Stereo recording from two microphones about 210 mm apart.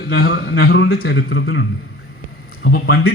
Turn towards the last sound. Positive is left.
turn(degrees=45)  # may be behind; listen again after turning